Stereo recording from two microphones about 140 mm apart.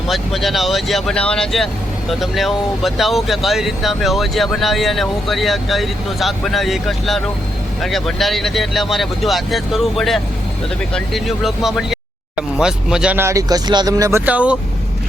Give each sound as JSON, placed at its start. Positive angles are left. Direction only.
{"t": 0.1, "sound": "speech", "side_deg": 0}
{"t": 13.1, "sound": "speech", "side_deg": -20}